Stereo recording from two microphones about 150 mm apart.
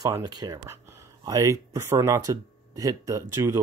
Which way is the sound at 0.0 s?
25° right (ahead or behind).